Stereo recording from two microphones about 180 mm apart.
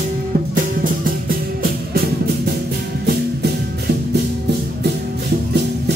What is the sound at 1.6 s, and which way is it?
Music, 55° right (ahead or behind).